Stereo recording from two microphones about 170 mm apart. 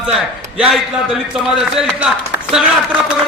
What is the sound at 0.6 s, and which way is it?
A man's voice, centre (ahead or behind).